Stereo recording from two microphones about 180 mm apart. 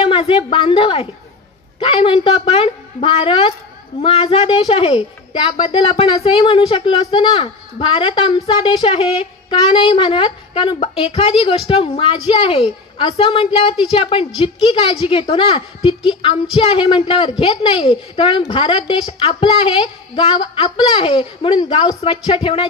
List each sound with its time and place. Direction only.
0.0 s a woman's voice: 30° left (ahead or behind)